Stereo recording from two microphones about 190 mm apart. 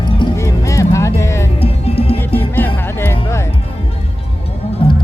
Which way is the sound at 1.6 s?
30° left (ahead or behind).